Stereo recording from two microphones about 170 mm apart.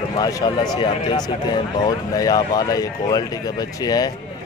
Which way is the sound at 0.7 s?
30° left (ahead or behind).